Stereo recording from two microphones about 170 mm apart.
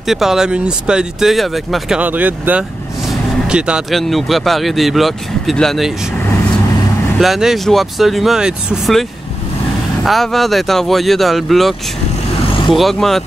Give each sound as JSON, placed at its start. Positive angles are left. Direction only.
{"t": 0.0, "sound": "speech", "side_deg": 0}
{"t": 7.2, "sound": "speech", "side_deg": 0}
{"t": 10.0, "sound": "speech", "side_deg": 0}